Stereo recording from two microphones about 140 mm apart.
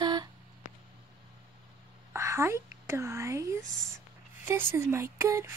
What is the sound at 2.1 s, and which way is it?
Speech, 20° right (ahead or behind).